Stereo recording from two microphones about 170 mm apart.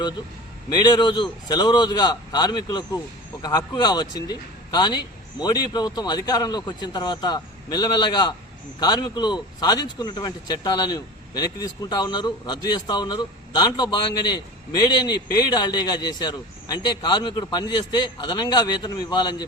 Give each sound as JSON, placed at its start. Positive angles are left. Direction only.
{"t": 0.9, "sound": "a man's voice", "side_deg": 25}